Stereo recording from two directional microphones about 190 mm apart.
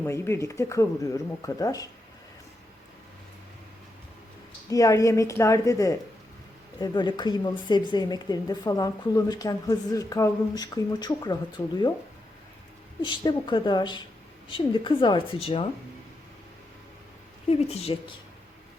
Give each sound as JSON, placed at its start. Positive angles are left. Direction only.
{"t": 0.0, "sound": "speech", "side_deg": 15}
{"t": 4.7, "sound": "a woman's voice", "side_deg": 15}
{"t": 13.0, "sound": "a woman's voice", "side_deg": 25}
{"t": 17.5, "sound": "speech", "side_deg": 35}